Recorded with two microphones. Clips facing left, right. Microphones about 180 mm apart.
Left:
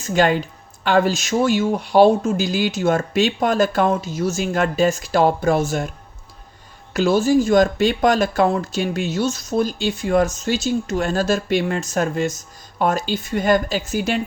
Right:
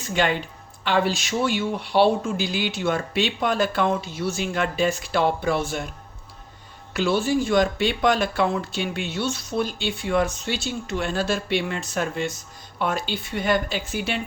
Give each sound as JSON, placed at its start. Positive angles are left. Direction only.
{"t": 0.1, "sound": "a woman's voice", "side_deg": 40}
{"t": 6.9, "sound": "speech", "side_deg": 40}